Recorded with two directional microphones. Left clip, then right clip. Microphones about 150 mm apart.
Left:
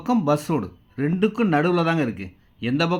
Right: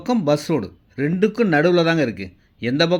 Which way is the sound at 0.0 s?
10° right (ahead or behind).